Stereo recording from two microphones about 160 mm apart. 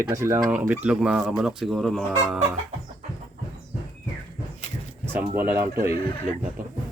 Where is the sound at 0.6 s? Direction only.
10° right (ahead or behind).